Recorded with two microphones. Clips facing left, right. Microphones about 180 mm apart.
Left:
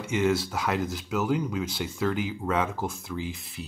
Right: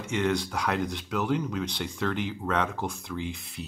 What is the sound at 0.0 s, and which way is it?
Speech, 5° left (ahead or behind).